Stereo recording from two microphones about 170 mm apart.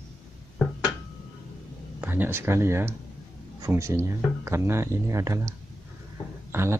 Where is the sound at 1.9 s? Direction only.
10° right (ahead or behind).